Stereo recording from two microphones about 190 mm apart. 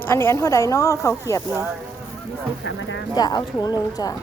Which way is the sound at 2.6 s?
75° left (ahead or behind).